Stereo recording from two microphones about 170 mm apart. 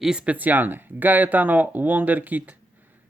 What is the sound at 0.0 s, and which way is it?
Speech, 5° right (ahead or behind).